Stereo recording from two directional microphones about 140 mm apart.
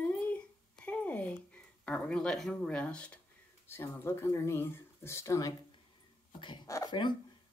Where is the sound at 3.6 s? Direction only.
15° left (ahead or behind).